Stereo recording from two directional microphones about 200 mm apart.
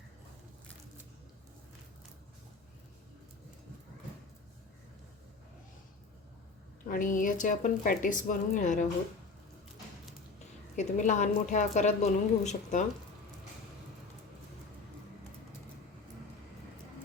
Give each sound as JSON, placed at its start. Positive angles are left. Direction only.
{"t": 6.8, "sound": "a woman's voice", "side_deg": 40}
{"t": 10.8, "sound": "a woman's voice", "side_deg": 35}